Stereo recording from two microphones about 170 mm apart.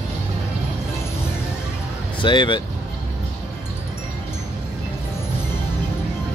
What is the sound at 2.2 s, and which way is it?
Speech, 30° left (ahead or behind).